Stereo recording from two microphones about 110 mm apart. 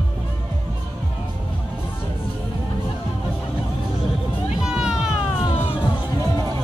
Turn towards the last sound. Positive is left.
turn(degrees=-5)  # may be behind; listen again after turning